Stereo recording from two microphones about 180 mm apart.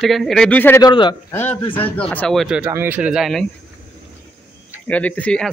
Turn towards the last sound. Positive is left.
turn(degrees=5)  # may be behind; listen again after turning